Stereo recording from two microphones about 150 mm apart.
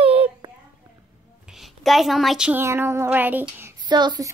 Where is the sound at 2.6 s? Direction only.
15° right (ahead or behind).